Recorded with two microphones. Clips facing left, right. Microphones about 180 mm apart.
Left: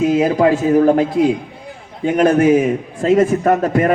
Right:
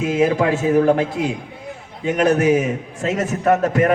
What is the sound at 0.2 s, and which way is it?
Speech, 40° left (ahead or behind).